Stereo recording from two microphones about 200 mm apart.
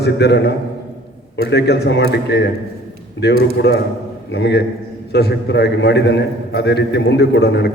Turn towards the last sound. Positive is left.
turn(degrees=60)  # may be behind; listen again after turning